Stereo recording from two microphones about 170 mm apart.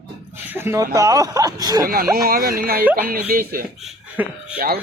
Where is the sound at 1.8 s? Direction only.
60° right (ahead or behind).